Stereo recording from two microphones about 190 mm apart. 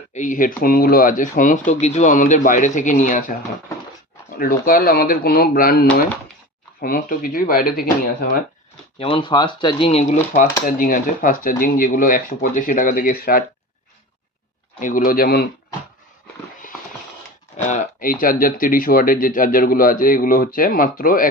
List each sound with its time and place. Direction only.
0.1 s speech: 40° left (ahead or behind)
4.4 s speech: 50° left (ahead or behind)
9.0 s speech: 30° left (ahead or behind); by 13.4 s 50° left (ahead or behind)
14.8 s speech: 45° left (ahead or behind)
17.7 s speech: 45° left (ahead or behind)